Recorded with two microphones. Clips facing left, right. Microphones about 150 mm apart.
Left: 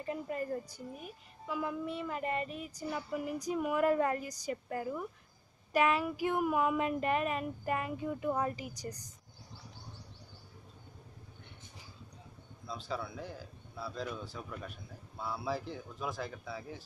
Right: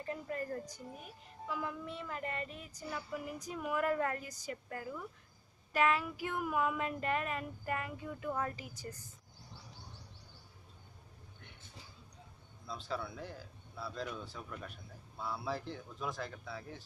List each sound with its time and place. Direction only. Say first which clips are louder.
0.0 s a woman's voice: left 3 dB; 15° left (ahead or behind)
1.5 s child singing: left 5 dB; 15° left (ahead or behind)
3.4 s speech: left 5 dB; 15° left (ahead or behind)
12.6 s speech: left 1 dB; centre (ahead or behind)